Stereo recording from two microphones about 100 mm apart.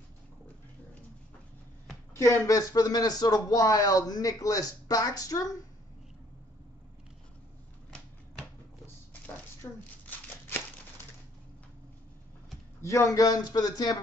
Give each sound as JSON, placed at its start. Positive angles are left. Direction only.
{"t": 2.1, "sound": "speech", "side_deg": 30}
{"t": 9.6, "sound": "speech", "side_deg": 30}
{"t": 12.8, "sound": "speech", "side_deg": 30}